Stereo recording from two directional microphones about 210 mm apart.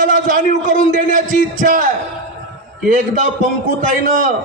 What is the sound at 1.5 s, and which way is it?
Speech, 40° right (ahead or behind).